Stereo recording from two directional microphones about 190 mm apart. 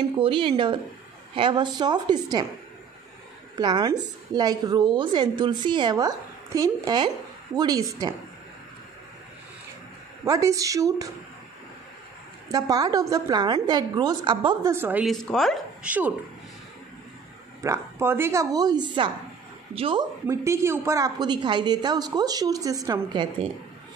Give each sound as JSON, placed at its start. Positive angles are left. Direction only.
{"t": 0.2, "sound": "a woman's voice", "side_deg": -30}
{"t": 3.5, "sound": "a woman's voice", "side_deg": -20}
{"t": 10.2, "sound": "speech", "side_deg": -15}
{"t": 12.4, "sound": "a woman's voice", "side_deg": -20}
{"t": 15.1, "sound": "speech", "side_deg": 0}
{"t": 17.6, "sound": "a woman's voice", "side_deg": -15}